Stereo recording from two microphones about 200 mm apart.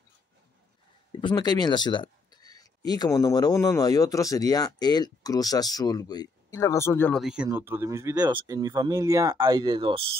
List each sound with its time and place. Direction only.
1.2 s speech: 20° left (ahead or behind)
7.2 s speech: 5° right (ahead or behind); by 10.0 s 25° right (ahead or behind)